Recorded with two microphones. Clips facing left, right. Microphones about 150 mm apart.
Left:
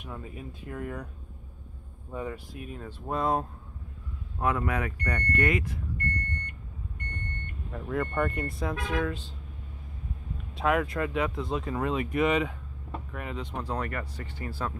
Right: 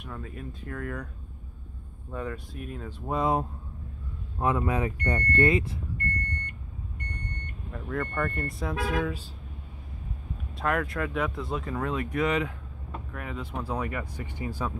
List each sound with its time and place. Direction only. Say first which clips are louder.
0.0 s speech: right 1 dB; 10° left (ahead or behind)
2.0 s speech: right 1 dB; 10° left (ahead or behind)
4.4 s speech: right 2 dB; 25° right (ahead or behind)
7.7 s speech: left 2 dB; 5° left (ahead or behind)
10.6 s speech: left 2 dB; centre (ahead or behind); by 14.7 s 15° right (ahead or behind)